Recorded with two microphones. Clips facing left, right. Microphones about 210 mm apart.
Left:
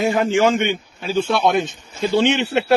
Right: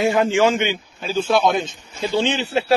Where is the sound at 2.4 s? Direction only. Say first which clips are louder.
Left 2 dB; 70° left (ahead or behind).